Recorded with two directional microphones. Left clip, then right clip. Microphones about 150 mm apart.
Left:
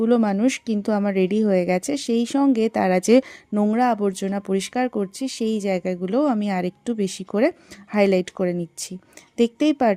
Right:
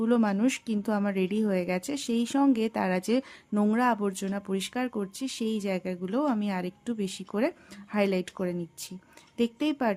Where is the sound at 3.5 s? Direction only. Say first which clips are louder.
Left 6 dB; 25° left (ahead or behind).